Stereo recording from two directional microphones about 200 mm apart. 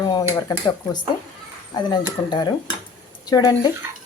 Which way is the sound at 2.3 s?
20° left (ahead or behind).